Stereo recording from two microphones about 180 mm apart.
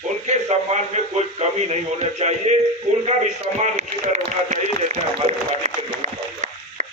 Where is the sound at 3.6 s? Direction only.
40° right (ahead or behind).